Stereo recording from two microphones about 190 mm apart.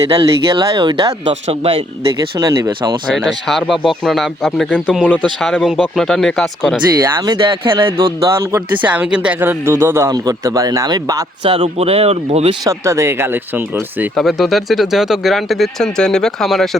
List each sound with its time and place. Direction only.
0.2 s speech: 25° right (ahead or behind)
2.4 s speech: 15° right (ahead or behind)
3.2 s speech: centre (ahead or behind)
7.2 s speech: 25° right (ahead or behind)
11.5 s speech: 30° right (ahead or behind)
12.6 s speech: 15° right (ahead or behind); by 16.6 s centre (ahead or behind)